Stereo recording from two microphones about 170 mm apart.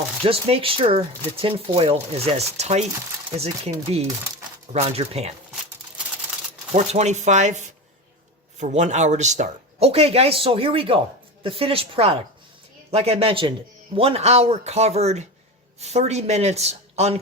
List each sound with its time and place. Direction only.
0.3 s speech: 35° right (ahead or behind)
6.7 s speech: 40° right (ahead or behind)